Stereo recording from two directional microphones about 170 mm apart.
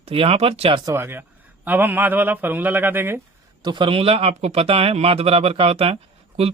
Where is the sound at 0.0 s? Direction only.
35° right (ahead or behind).